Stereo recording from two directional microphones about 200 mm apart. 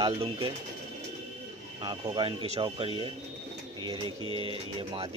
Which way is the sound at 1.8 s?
20° right (ahead or behind).